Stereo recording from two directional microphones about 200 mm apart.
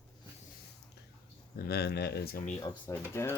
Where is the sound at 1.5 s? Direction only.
50° left (ahead or behind).